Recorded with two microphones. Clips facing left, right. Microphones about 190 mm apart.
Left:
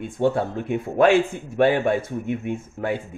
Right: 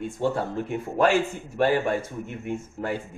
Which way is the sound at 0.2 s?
60° left (ahead or behind).